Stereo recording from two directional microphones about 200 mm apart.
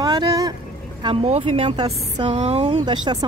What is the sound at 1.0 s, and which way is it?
A woman's voice, 30° right (ahead or behind).